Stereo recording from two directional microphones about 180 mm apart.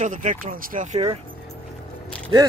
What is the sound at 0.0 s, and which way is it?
Speech, 45° right (ahead or behind).